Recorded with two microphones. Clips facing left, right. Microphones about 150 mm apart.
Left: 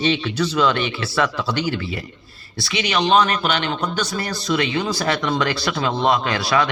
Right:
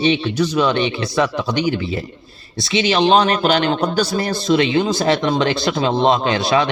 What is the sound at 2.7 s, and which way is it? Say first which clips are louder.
A man's voice: right 3 dB; 30° right (ahead or behind).